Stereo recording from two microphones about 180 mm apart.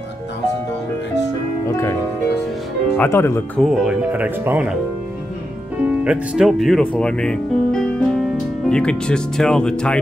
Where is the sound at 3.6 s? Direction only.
Centre (ahead or behind).